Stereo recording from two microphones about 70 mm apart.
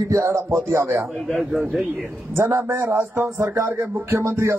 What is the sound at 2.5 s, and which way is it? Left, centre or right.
A man's voice, right.